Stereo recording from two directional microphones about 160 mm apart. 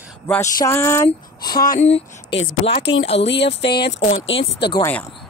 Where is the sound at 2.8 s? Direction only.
90° left.